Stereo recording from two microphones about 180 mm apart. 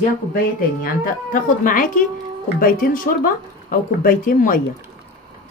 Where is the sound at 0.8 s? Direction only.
50° left (ahead or behind).